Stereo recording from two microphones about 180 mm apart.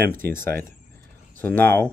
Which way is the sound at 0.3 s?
10° left (ahead or behind).